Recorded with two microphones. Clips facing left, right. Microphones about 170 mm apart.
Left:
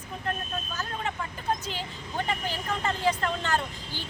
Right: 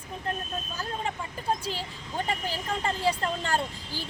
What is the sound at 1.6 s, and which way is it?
A woman's voice, 35° right (ahead or behind).